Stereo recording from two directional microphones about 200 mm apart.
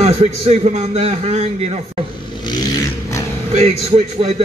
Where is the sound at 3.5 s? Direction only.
30° right (ahead or behind).